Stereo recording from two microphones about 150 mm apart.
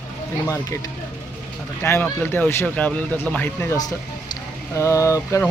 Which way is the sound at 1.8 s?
15° left (ahead or behind).